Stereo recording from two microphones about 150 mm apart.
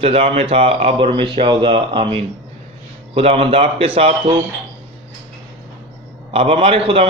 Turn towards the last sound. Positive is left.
turn(degrees=-40)  # may be behind; listen again after turning